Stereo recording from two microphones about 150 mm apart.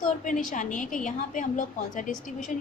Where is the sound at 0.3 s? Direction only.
60° left (ahead or behind).